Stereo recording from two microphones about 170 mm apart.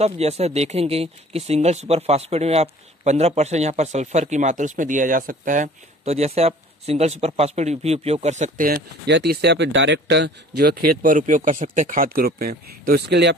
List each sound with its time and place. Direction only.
0.0 s speech: 40° right (ahead or behind)
8.6 s speech: 70° right (ahead or behind)